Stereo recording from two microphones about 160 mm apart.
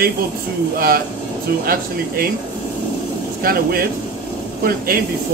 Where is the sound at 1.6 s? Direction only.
65° right (ahead or behind).